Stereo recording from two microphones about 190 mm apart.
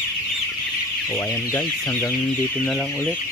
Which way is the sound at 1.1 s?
15° left (ahead or behind).